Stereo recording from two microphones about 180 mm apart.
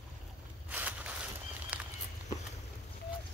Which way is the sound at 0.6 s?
10° right (ahead or behind).